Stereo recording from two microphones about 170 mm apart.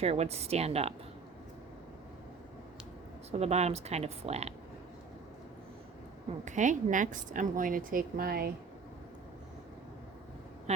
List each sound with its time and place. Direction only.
0.0 s speech: 40° right (ahead or behind)
3.3 s speech: 40° right (ahead or behind)
6.4 s a woman's voice: 45° right (ahead or behind); by 8.5 s 60° right (ahead or behind)